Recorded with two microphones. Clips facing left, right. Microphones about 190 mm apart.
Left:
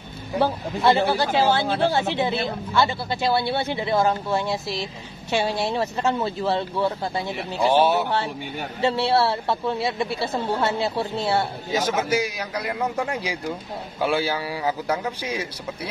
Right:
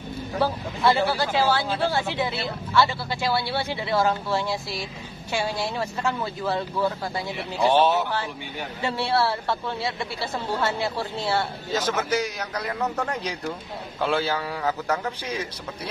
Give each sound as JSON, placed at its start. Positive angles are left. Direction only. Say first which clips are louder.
{"t": 0.4, "sound": "a woman's voice", "louder": "left 2 dB", "side_deg": 25}
{"t": 7.6, "sound": "a man's voice", "louder": "left 1 dB", "side_deg": 10}
{"t": 8.8, "sound": "a woman's voice", "louder": "left 4 dB", "side_deg": 25}
{"t": 11.7, "sound": "a man's voice", "louder": "left 2 dB", "side_deg": 10}